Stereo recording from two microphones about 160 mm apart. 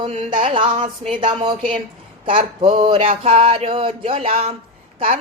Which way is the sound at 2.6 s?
30° right (ahead or behind).